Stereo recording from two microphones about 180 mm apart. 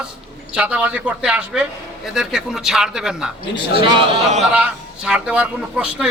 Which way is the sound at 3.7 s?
30° right (ahead or behind).